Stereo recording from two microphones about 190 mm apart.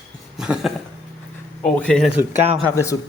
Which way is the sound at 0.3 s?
5° right (ahead or behind).